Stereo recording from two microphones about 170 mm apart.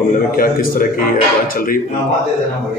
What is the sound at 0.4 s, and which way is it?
A man's voice, 60° left (ahead or behind).